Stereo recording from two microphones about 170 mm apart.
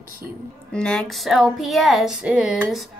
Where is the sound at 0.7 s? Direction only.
5° left (ahead or behind).